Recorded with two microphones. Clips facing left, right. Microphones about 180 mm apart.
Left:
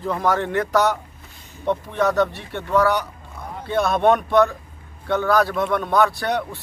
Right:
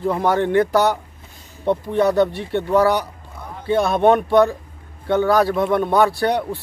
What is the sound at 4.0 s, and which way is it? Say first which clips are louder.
Speech: right 2 dB; 10° right (ahead or behind).